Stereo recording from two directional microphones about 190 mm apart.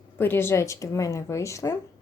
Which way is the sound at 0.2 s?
10° left (ahead or behind).